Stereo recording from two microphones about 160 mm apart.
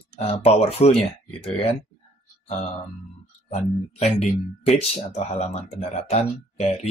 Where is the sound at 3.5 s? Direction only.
45° left (ahead or behind).